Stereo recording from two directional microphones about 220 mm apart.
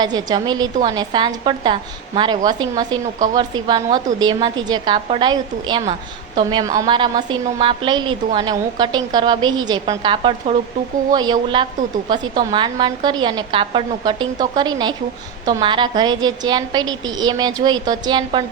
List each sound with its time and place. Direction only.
0.0 s a woman's voice: 20° right (ahead or behind)